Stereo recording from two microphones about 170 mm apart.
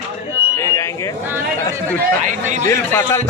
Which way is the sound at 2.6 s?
15° left (ahead or behind).